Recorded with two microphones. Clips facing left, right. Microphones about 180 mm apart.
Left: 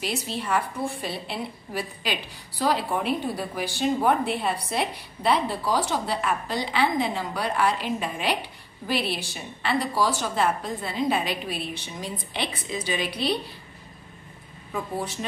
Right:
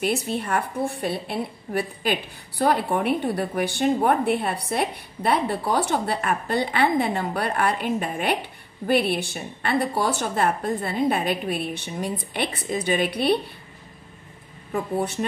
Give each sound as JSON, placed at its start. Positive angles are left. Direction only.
{"t": 0.0, "sound": "a woman's voice", "side_deg": -55}
{"t": 14.7, "sound": "a woman's voice", "side_deg": -60}